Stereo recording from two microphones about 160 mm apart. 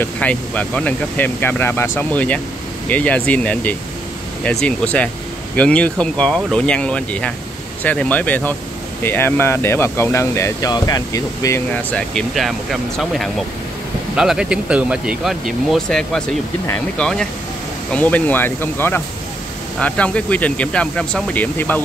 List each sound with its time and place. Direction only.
0.0 s speech: 10° left (ahead or behind)
14.1 s speech: 5° right (ahead or behind)